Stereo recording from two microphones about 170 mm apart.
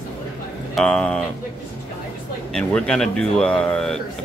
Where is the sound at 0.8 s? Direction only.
5° left (ahead or behind).